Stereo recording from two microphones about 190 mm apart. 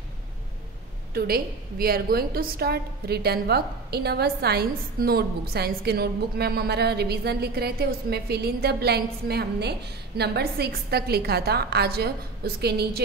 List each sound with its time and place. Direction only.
1.1 s a woman's voice: 55° right (ahead or behind)